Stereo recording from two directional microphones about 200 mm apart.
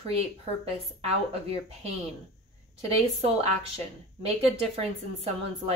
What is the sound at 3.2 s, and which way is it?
A woman's voice, 30° right (ahead or behind).